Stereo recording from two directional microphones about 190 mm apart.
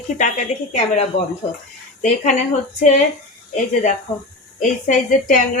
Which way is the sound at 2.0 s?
40° left (ahead or behind).